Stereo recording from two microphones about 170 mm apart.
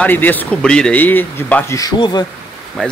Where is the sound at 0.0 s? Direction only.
10° left (ahead or behind).